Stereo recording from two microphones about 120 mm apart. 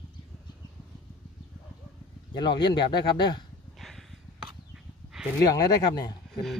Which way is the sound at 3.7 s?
Centre (ahead or behind).